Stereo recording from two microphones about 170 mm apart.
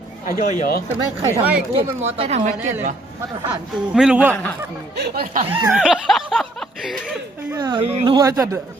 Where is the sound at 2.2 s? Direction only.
40° right (ahead or behind).